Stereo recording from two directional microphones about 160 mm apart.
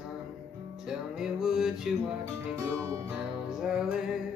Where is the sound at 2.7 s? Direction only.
20° right (ahead or behind).